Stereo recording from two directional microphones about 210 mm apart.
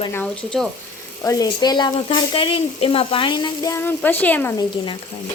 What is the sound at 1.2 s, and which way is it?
Speech, 15° left (ahead or behind).